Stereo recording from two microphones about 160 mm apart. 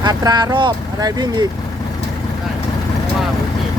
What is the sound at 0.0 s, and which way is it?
Speech, 25° right (ahead or behind).